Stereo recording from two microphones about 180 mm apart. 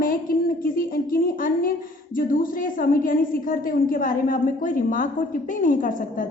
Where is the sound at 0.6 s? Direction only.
50° left (ahead or behind).